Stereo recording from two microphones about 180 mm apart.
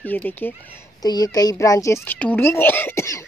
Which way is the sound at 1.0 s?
20° left (ahead or behind).